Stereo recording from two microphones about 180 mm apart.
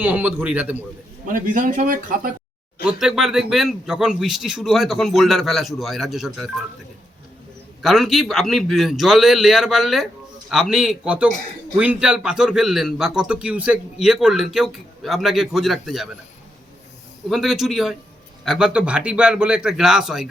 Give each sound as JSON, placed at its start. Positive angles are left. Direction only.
{"t": 0.0, "sound": "a man's voice", "side_deg": -10}
{"t": 1.3, "sound": "speech", "side_deg": -50}
{"t": 2.8, "sound": "a man's voice", "side_deg": -5}
{"t": 7.8, "sound": "a man's voice", "side_deg": 0}
{"t": 17.2, "sound": "a man's voice", "side_deg": 0}